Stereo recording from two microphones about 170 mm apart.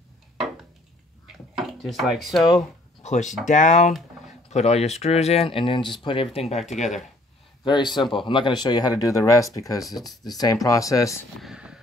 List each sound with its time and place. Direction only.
1.6 s speech: centre (ahead or behind)
3.0 s speech: 45° left (ahead or behind); by 6.2 s 30° left (ahead or behind)
6.7 s speech: 40° left (ahead or behind)
7.6 s speech: 25° left (ahead or behind)
11.4 s vehicle: 5° right (ahead or behind)